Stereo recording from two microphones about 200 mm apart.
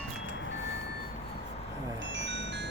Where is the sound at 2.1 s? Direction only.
65° right (ahead or behind).